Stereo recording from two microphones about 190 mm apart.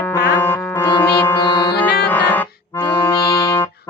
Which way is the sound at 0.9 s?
20° left (ahead or behind).